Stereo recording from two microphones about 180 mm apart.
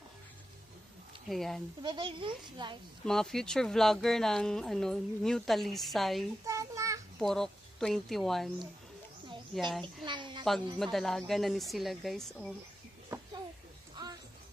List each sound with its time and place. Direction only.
1.3 s speech: centre (ahead or behind)
1.8 s a child's voice: 25° right (ahead or behind)
3.1 s speech: centre (ahead or behind)
6.4 s a sound: 15° right (ahead or behind)
7.2 s speech: centre (ahead or behind)
10.0 s a child's voice: 25° right (ahead or behind)
10.8 s speech: centre (ahead or behind)